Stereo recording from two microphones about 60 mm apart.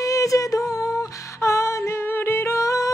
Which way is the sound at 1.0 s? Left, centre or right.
Left.